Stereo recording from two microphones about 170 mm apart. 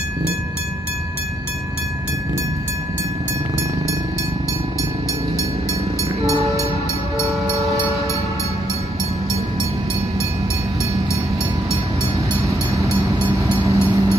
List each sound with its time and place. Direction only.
12.4 s train: 20° right (ahead or behind)